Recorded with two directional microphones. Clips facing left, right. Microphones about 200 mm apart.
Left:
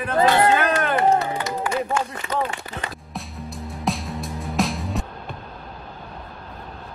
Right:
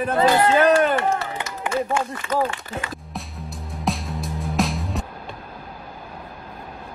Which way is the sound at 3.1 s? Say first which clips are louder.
Left 1 dB; centre (ahead or behind).